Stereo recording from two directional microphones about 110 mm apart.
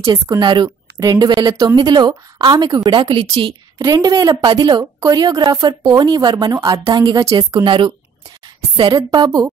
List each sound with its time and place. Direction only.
0.1 s a woman's voice: 45° right (ahead or behind)
7.2 s a woman's voice: 50° right (ahead or behind)